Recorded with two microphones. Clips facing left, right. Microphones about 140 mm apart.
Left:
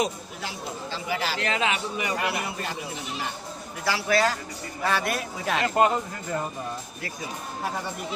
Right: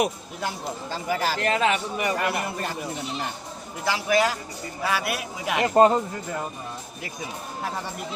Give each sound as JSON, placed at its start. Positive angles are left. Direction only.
{"t": 0.0, "sound": "a man's voice", "side_deg": -50}
{"t": 3.8, "sound": "a man's voice", "side_deg": -20}
{"t": 5.7, "sound": "speech", "side_deg": -35}